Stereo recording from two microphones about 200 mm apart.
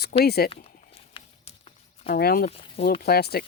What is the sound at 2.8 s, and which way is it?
Speech, 50° left (ahead or behind).